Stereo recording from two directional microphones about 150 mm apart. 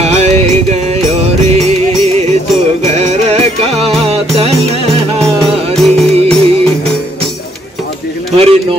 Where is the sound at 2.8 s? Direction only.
50° right (ahead or behind).